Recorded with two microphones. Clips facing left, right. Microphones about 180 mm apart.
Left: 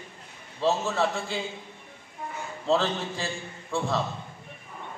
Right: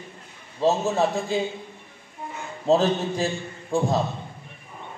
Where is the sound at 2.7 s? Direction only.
40° right (ahead or behind).